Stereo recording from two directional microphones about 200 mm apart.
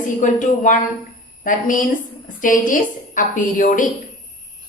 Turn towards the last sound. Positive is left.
turn(degrees=40)  # may be behind; listen again after turning